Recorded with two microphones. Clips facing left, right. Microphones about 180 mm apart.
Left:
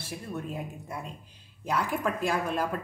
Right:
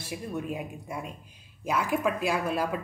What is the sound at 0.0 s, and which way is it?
A woman's voice, 10° right (ahead or behind).